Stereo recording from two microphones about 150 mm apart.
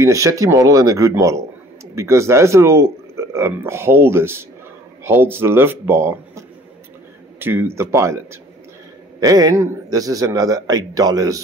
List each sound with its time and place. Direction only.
0.0 s a man's voice: 20° right (ahead or behind)